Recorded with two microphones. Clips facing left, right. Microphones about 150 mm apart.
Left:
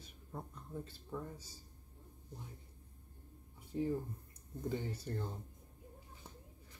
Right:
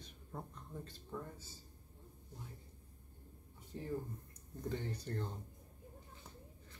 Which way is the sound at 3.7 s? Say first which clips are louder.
Left 5 dB; 15° left (ahead or behind).